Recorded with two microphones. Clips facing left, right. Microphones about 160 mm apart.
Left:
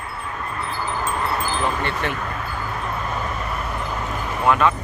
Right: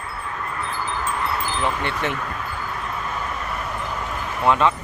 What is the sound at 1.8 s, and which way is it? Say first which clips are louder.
Speech: even; 20° right (ahead or behind).